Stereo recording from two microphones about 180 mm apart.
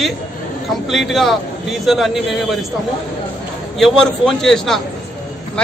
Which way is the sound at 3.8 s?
Centre (ahead or behind).